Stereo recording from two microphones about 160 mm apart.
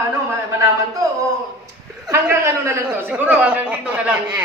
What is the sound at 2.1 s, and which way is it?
Speech, 15° right (ahead or behind).